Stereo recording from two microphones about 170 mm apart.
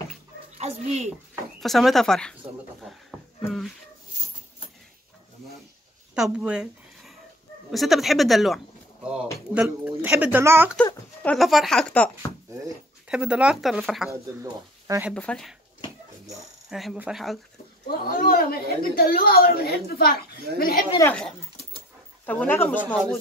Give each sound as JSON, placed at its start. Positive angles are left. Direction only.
{"t": 0.6, "sound": "a child's voice", "side_deg": -40}
{"t": 1.6, "sound": "speech", "side_deg": 0}
{"t": 3.4, "sound": "speech", "side_deg": 0}
{"t": 6.1, "sound": "speech", "side_deg": -5}
{"t": 11.2, "sound": "speech", "side_deg": 0}
{"t": 13.1, "sound": "speech", "side_deg": -5}
{"t": 14.4, "sound": "speech", "side_deg": -20}
{"t": 15.1, "sound": "speech", "side_deg": 5}
{"t": 16.6, "sound": "speech", "side_deg": 0}
{"t": 17.8, "sound": "a woman's voice", "side_deg": 60}
{"t": 21.0, "sound": "speech", "side_deg": 10}